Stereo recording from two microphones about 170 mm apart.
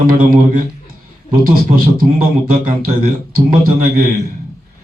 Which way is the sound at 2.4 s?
55° right (ahead or behind).